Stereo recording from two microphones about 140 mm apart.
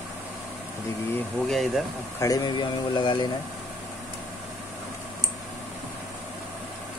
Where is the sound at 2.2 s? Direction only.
30° left (ahead or behind).